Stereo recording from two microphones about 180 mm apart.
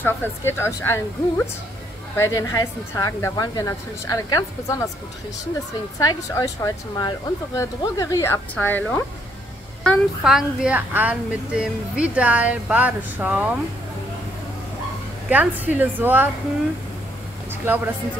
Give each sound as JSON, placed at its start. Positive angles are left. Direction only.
{"t": 0.0, "sound": "speech", "side_deg": 15}
{"t": 5.9, "sound": "speech", "side_deg": 20}
{"t": 9.8, "sound": "a woman's voice", "side_deg": -5}
{"t": 15.2, "sound": "a woman's voice", "side_deg": -10}